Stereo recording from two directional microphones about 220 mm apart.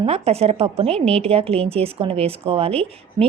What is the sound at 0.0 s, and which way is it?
A woman's voice, 30° right (ahead or behind).